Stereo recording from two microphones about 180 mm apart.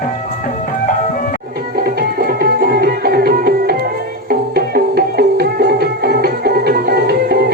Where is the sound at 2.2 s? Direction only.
60° right (ahead or behind).